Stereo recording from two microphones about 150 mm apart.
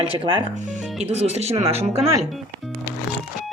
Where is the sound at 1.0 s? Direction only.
45° right (ahead or behind).